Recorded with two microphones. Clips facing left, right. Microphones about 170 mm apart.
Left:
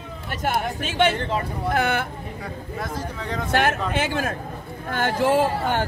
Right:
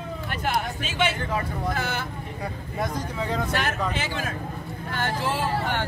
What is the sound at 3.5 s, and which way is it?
Speech, 55° left (ahead or behind).